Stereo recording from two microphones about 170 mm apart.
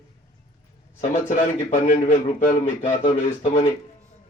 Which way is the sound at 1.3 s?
50° left (ahead or behind).